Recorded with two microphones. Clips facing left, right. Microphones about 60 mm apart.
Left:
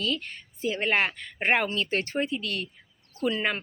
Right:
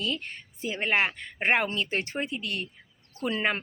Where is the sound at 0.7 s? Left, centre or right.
Centre.